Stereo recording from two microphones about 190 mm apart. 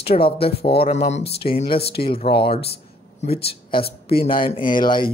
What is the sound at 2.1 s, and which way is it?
Speech, 30° left (ahead or behind).